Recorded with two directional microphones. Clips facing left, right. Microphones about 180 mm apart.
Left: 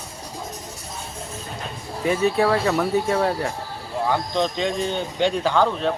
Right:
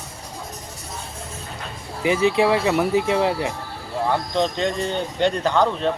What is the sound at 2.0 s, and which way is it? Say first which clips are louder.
Speech: right 2 dB; 90° right.